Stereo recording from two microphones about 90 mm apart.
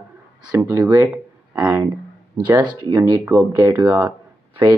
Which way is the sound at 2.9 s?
45° right (ahead or behind).